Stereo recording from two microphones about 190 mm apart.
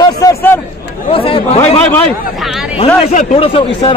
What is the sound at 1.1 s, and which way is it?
Speech, 30° left (ahead or behind).